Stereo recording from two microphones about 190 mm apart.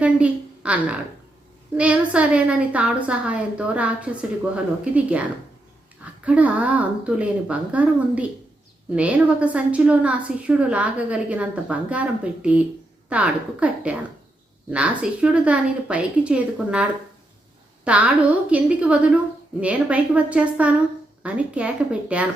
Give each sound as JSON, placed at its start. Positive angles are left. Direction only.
{"t": 0.0, "sound": "a sound", "side_deg": -5}
{"t": 1.7, "sound": "a woman's voice", "side_deg": -5}
{"t": 6.2, "sound": "a woman's voice", "side_deg": -5}
{"t": 17.8, "sound": "a woman's voice", "side_deg": -5}